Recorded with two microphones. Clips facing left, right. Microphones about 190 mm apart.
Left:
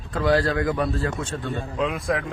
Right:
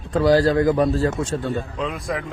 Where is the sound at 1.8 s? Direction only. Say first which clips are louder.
Left 2 dB; centre (ahead or behind).